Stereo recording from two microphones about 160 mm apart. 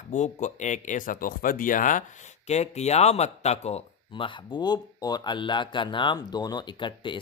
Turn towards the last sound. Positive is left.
turn(degrees=30)  # may be behind; listen again after turning